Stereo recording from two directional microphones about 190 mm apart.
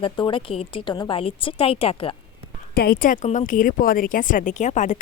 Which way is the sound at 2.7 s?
50° left (ahead or behind).